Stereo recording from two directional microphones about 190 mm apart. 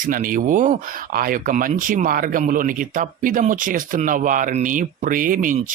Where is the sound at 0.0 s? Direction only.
45° right (ahead or behind).